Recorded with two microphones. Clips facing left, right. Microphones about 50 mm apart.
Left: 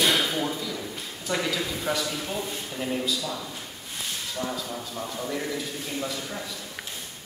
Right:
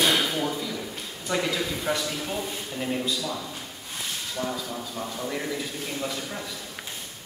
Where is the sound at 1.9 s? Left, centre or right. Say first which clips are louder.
Left 1 dB; centre.